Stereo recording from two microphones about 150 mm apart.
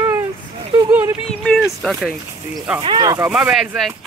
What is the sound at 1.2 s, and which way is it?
Speech, 5° left (ahead or behind).